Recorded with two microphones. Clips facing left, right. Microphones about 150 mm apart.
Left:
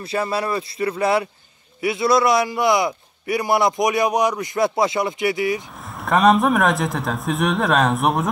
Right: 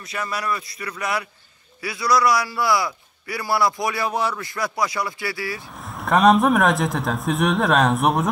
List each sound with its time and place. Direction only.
0.0 s a man's voice: 30° left (ahead or behind)
5.9 s a man's voice: centre (ahead or behind)